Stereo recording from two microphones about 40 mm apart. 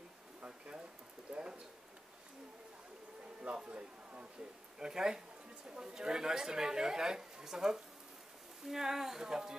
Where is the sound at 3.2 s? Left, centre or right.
Right.